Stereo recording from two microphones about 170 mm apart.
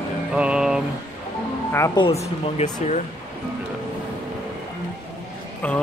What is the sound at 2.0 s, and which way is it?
Speech, 35° left (ahead or behind).